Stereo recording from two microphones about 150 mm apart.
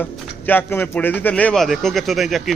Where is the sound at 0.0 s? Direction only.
10° left (ahead or behind).